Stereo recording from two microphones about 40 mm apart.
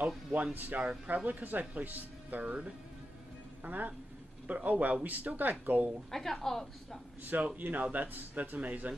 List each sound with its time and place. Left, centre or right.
0.0 s speech: right
3.6 s a man's voice: right
6.1 s a woman's voice: centre
7.4 s speech: right
8.5 s a man's voice: right